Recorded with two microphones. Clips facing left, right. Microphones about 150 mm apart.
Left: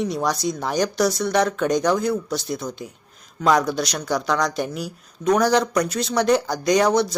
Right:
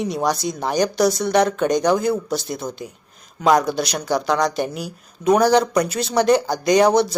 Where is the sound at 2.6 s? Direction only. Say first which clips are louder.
Right 2 dB; 25° right (ahead or behind).